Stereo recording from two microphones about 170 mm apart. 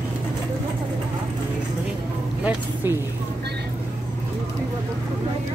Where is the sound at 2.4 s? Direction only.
10° right (ahead or behind).